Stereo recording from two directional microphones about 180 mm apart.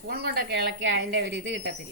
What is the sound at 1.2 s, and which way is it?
Speech, 90° right.